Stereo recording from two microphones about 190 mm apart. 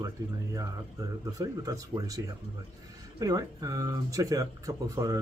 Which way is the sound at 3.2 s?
20° right (ahead or behind).